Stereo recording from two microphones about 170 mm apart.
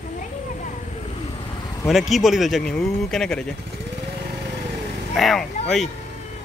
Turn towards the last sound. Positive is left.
turn(degrees=0)  # may be behind; listen again after turning